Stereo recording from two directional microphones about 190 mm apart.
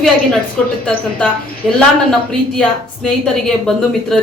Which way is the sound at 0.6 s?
5° left (ahead or behind).